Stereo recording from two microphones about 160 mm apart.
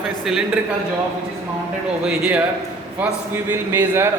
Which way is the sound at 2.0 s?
10° right (ahead or behind).